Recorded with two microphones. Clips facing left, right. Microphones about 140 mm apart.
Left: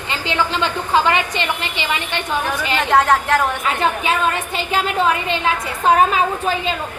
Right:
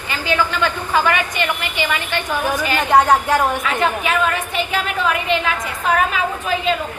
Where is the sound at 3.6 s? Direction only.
30° left (ahead or behind).